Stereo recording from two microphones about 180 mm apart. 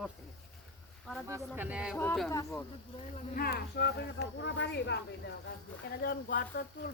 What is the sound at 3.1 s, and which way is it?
Speech, 50° left (ahead or behind).